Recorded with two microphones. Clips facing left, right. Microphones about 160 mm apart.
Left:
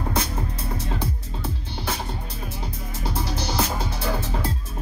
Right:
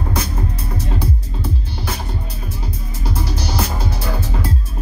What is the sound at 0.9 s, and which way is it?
Music, 25° left (ahead or behind).